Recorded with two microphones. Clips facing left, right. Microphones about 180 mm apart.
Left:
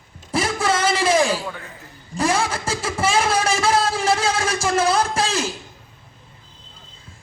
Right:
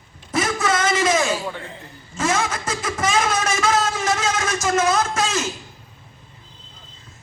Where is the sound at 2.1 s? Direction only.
35° left (ahead or behind).